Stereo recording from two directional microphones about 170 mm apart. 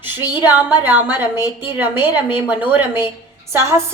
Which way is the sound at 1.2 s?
10° right (ahead or behind).